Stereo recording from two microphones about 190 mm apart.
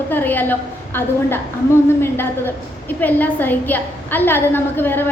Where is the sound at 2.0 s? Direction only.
10° left (ahead or behind).